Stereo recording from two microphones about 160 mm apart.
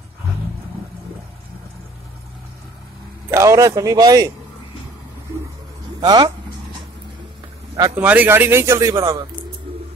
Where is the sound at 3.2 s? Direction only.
20° right (ahead or behind).